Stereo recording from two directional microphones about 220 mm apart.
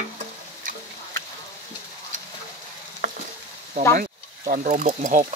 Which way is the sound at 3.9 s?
40° right (ahead or behind).